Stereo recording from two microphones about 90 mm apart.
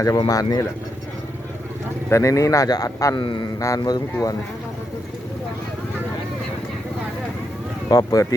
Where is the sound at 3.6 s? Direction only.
40° left (ahead or behind).